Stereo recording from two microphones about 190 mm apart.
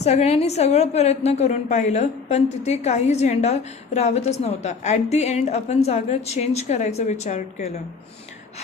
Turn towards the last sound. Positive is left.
turn(degrees=35)  # may be behind; listen again after turning